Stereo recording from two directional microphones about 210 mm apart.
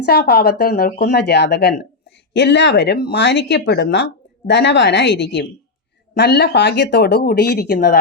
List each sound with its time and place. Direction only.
0.0 s speech: 50° left (ahead or behind)